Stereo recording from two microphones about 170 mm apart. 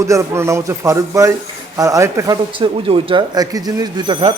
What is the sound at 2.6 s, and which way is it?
A man's voice, 30° right (ahead or behind).